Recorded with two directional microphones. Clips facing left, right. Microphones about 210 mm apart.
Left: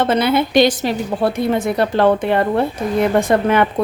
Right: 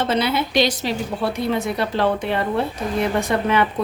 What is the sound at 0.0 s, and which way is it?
A woman's voice, 55° left (ahead or behind).